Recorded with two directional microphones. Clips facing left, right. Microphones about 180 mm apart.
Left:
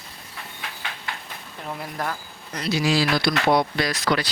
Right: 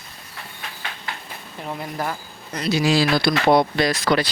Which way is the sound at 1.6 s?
5° right (ahead or behind).